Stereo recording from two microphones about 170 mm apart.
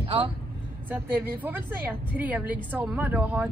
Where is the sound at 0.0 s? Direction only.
30° right (ahead or behind).